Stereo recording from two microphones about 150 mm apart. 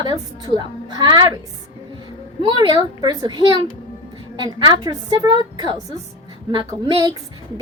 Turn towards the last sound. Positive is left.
turn(degrees=-30)  # may be behind; listen again after turning